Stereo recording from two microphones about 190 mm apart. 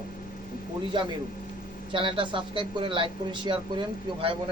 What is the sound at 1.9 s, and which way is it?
Speech, 25° right (ahead or behind).